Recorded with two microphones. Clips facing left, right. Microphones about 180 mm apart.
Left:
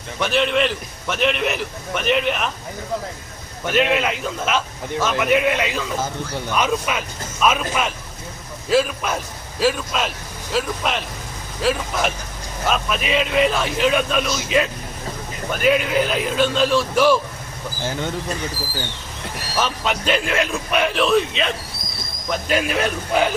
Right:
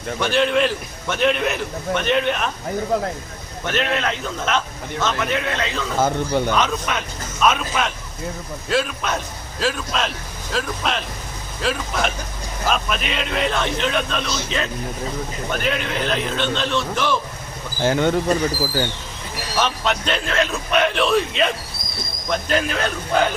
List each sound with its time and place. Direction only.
0.2 s a man's voice: centre (ahead or behind)
3.7 s a man's voice: 10° left (ahead or behind)
17.8 s speech: 70° right (ahead or behind)
19.5 s a man's voice: 5° left (ahead or behind)